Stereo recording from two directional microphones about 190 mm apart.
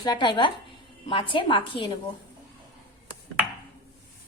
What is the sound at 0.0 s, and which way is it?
A woman's voice, 25° left (ahead or behind).